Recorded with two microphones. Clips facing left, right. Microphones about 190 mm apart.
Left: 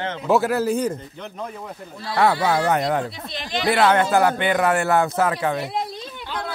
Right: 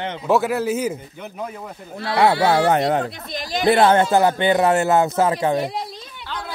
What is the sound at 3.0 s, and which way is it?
Speech, 45° right (ahead or behind).